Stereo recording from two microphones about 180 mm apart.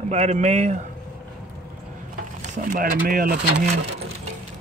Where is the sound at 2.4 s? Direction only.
45° right (ahead or behind).